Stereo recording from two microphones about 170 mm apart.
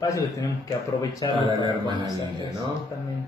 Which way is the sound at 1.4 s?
25° right (ahead or behind).